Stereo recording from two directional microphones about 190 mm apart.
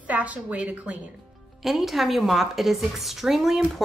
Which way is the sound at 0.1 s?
10° right (ahead or behind).